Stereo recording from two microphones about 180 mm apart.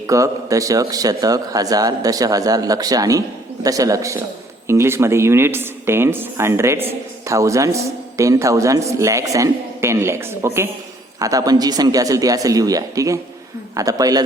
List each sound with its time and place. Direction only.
0.1 s a man's voice: 20° right (ahead or behind)